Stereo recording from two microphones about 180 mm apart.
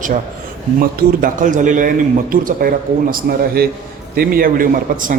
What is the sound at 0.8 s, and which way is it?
A man's voice, 45° right (ahead or behind).